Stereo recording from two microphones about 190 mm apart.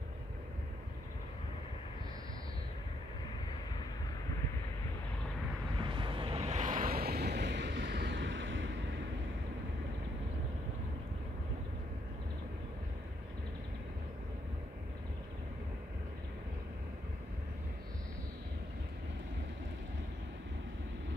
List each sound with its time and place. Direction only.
5.8 s waves: 25° right (ahead or behind); by 8.7 s 75° right (ahead or behind)